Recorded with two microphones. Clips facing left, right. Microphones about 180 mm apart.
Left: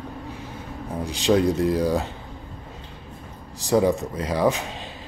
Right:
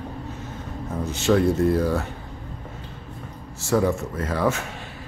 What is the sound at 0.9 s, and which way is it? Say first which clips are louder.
Speech: even; 15° left (ahead or behind).